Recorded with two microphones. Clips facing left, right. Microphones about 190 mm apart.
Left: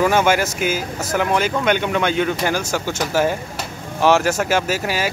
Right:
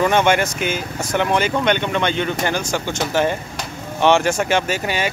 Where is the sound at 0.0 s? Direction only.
5° left (ahead or behind).